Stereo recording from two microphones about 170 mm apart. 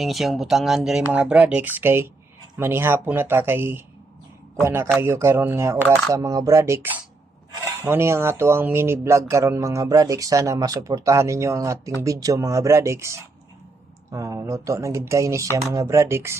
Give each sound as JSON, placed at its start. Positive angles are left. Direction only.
{"t": 0.0, "sound": "speech", "side_deg": 0}